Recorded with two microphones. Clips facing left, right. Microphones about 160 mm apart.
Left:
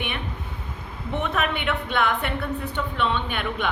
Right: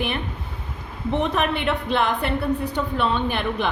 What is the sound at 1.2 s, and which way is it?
A woman's voice, 35° right (ahead or behind).